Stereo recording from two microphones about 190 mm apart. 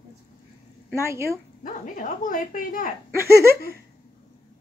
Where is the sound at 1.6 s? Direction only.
45° left (ahead or behind).